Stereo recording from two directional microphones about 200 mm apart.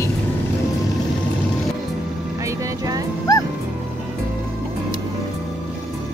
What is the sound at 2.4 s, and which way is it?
Vehicle, 20° right (ahead or behind).